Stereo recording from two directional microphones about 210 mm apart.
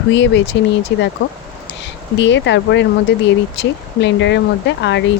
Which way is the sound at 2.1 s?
60° left (ahead or behind).